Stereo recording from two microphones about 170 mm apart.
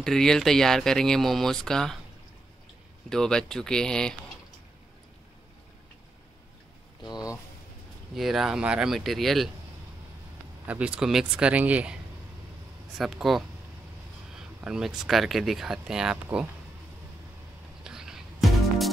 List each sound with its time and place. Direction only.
0.0 s speech: 5° left (ahead or behind)
3.1 s speech: 5° left (ahead or behind)
7.0 s a sound: 25° left (ahead or behind)
8.1 s speech: centre (ahead or behind)
10.7 s speech: 5° right (ahead or behind)
17.8 s music: 5° right (ahead or behind)